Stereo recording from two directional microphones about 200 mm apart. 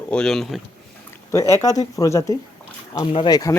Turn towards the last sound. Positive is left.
turn(degrees=20)  # may be behind; listen again after turning